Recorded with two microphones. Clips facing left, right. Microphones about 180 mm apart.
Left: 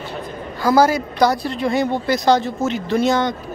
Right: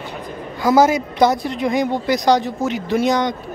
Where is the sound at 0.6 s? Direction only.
20° right (ahead or behind).